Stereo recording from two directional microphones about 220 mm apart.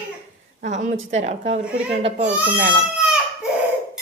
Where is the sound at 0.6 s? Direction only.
35° right (ahead or behind).